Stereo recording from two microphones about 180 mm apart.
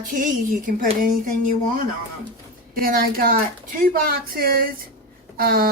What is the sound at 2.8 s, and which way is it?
Speech, 55° right (ahead or behind).